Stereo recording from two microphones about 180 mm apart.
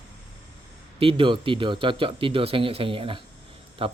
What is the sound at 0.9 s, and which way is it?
Speech, 30° right (ahead or behind).